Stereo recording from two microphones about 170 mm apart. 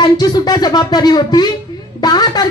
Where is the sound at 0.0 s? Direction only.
25° left (ahead or behind).